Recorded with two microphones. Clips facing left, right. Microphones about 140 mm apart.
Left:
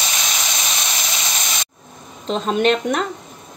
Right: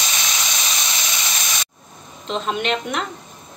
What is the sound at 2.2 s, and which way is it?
Speech, 40° left (ahead or behind).